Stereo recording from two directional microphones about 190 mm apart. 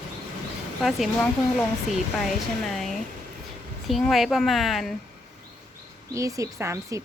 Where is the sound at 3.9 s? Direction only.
Centre (ahead or behind).